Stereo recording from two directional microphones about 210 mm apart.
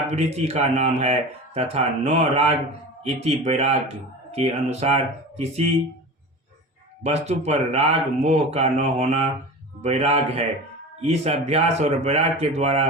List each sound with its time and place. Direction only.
0.1 s speech: 30° right (ahead or behind)
7.0 s speech: 30° right (ahead or behind)